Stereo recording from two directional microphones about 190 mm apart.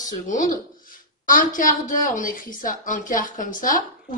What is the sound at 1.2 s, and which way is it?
A woman's voice, 45° left (ahead or behind).